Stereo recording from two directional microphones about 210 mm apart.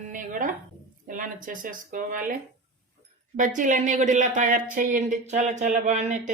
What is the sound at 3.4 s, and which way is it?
Speech, 35° right (ahead or behind).